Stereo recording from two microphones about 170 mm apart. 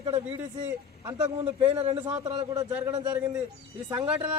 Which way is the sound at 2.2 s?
20° right (ahead or behind).